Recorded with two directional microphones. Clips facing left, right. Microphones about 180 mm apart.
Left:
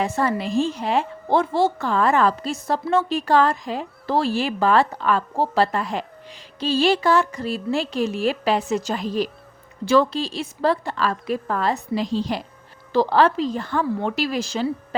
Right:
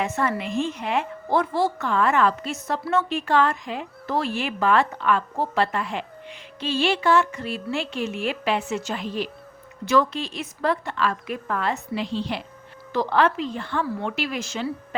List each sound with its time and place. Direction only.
0.0 s speech: 35° left (ahead or behind)